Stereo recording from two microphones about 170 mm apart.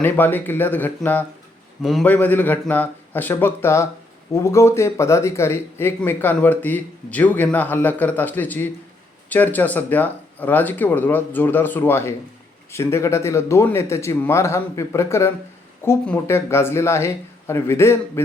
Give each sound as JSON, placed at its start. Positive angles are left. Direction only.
{"t": 0.0, "sound": "speech", "side_deg": 10}
{"t": 1.8, "sound": "speech", "side_deg": 0}